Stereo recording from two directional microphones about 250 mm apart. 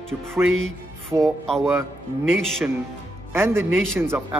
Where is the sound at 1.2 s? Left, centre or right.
Centre.